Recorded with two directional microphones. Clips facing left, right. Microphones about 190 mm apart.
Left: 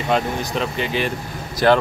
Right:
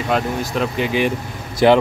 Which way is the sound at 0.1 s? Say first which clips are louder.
Even; 5° right (ahead or behind).